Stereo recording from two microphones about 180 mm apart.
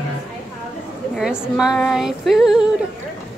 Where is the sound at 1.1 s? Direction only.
5° right (ahead or behind).